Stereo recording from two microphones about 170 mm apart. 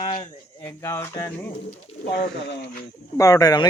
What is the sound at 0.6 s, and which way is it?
Speech, 15° left (ahead or behind).